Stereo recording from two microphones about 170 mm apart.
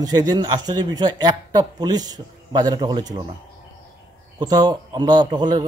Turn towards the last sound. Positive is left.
turn(degrees=-25)  # may be behind; listen again after turning